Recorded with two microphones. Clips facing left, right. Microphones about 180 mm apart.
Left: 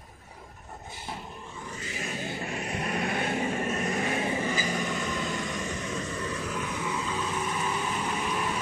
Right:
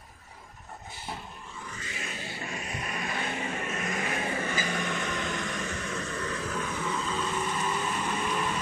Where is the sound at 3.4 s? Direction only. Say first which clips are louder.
Left 5 dB; 40° left (ahead or behind).